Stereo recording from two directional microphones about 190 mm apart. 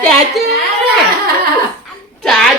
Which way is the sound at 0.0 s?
5° left (ahead or behind).